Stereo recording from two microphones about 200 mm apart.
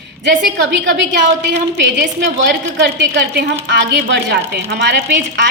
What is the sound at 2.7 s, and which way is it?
A woman's voice, 60° right (ahead or behind).